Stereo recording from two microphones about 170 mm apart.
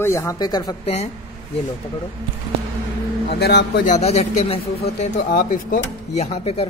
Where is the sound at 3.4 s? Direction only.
70° left (ahead or behind).